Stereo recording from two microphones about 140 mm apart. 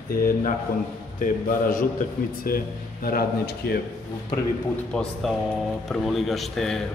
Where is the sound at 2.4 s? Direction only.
90° left.